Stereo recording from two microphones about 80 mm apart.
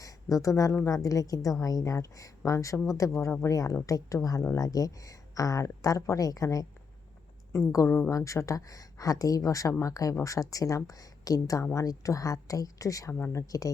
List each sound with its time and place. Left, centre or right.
0.0 s speech: left
8.1 s speech: left